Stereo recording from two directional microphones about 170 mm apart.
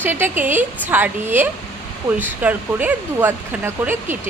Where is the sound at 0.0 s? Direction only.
10° right (ahead or behind).